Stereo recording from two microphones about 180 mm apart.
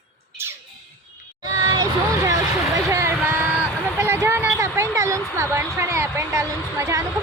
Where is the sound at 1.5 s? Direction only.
20° right (ahead or behind).